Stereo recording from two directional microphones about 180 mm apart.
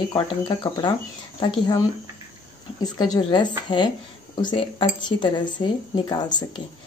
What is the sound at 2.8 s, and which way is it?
Speech, 20° left (ahead or behind).